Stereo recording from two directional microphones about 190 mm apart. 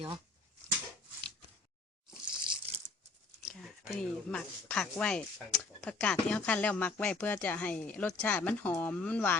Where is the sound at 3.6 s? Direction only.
5° left (ahead or behind).